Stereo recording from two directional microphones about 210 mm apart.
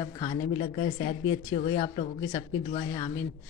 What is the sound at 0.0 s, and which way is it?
Speech, 20° left (ahead or behind).